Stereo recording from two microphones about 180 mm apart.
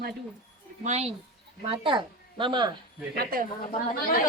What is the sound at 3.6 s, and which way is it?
Speech, 50° left (ahead or behind).